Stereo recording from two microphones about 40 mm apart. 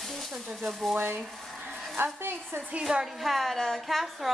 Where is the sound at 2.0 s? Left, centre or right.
Right.